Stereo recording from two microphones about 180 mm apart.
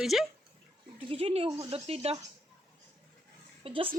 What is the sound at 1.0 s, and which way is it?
Speech, 35° right (ahead or behind).